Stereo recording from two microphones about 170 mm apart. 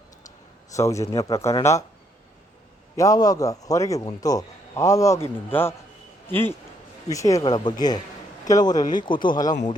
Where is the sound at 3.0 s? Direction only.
20° left (ahead or behind).